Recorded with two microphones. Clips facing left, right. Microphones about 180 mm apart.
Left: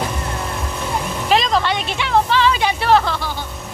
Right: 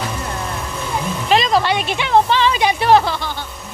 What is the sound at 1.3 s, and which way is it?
Speech, 5° right (ahead or behind).